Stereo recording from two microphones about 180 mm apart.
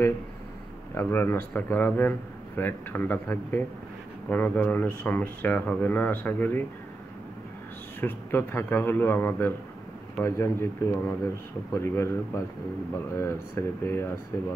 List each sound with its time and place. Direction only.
0.9 s a man's voice: 10° left (ahead or behind)
8.0 s a man's voice: 10° left (ahead or behind)